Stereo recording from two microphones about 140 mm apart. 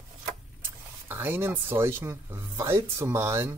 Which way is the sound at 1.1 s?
15° right (ahead or behind).